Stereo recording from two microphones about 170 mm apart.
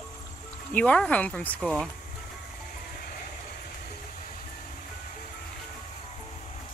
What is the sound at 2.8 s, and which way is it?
Music, 60° left (ahead or behind).